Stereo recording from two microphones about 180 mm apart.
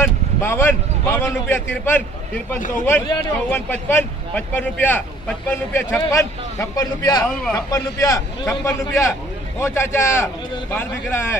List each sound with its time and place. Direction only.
0.0 s a man's voice: 15° left (ahead or behind)